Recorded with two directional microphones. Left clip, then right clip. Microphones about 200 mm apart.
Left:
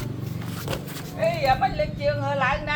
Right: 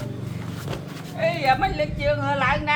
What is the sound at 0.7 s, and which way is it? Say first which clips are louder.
Vehicle: left 3 dB; 55° left (ahead or behind).